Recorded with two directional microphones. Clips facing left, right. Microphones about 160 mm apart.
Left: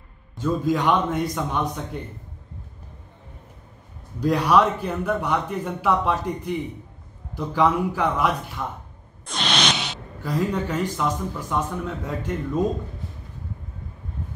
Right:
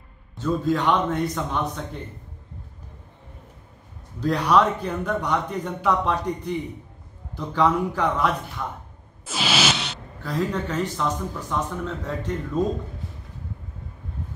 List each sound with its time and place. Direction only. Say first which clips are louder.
0.4 s speech: left 1 dB; 10° left (ahead or behind)
4.2 s speech: left 1 dB; 10° left (ahead or behind)
9.2 s a sound: right 1 dB; 5° right (ahead or behind)
10.3 s speech: left 1 dB; 10° left (ahead or behind)